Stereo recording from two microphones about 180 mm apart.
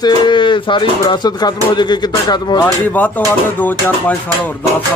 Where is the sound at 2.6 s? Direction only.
10° left (ahead or behind).